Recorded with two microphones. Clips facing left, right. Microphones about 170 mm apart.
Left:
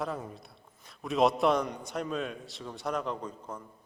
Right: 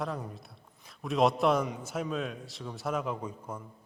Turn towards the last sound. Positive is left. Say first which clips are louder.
# right 1 dB
turn(degrees=-10)  # may be behind; listen again after turning